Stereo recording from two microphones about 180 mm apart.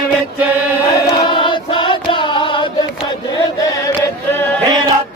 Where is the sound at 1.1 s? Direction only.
25° left (ahead or behind).